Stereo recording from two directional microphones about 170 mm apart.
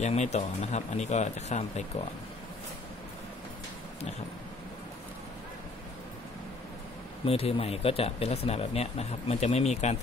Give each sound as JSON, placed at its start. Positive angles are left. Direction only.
{"t": 0.0, "sound": "speech", "side_deg": 40}
{"t": 7.2, "sound": "speech", "side_deg": 35}